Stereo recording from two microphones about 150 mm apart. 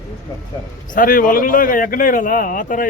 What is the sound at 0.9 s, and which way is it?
Speech, 70° left (ahead or behind).